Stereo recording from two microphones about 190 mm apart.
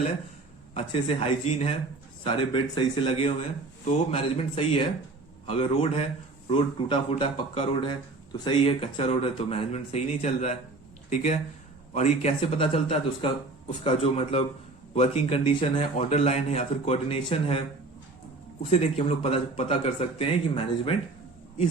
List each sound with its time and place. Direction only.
0.7 s a man's voice: 30° left (ahead or behind)
18.6 s a man's voice: 35° left (ahead or behind)